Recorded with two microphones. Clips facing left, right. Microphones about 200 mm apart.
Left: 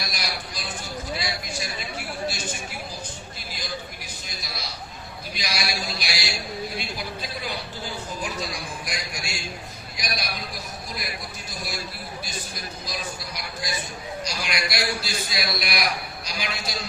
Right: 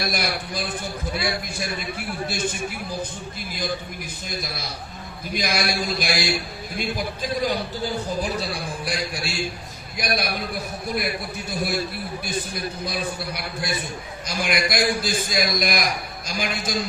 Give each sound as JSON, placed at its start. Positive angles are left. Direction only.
{"t": 0.0, "sound": "a man's voice", "side_deg": -55}
{"t": 4.3, "sound": "a man's voice", "side_deg": -55}
{"t": 10.0, "sound": "a man's voice", "side_deg": -55}